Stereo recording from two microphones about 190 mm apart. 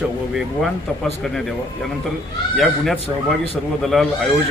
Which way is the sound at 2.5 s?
Centre (ahead or behind).